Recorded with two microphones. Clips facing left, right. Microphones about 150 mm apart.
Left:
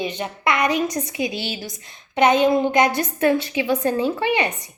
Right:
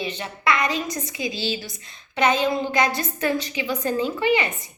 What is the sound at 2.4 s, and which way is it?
Speech, 20° left (ahead or behind).